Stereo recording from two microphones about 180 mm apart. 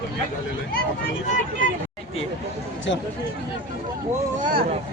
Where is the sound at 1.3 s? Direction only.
50° left (ahead or behind).